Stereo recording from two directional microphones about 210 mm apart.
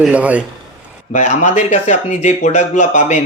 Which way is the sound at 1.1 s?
35° left (ahead or behind).